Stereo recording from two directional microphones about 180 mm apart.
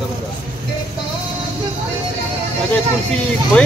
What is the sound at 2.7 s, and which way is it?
Speech, 5° left (ahead or behind).